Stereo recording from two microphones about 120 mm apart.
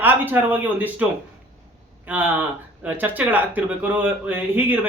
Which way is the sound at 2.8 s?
15° right (ahead or behind).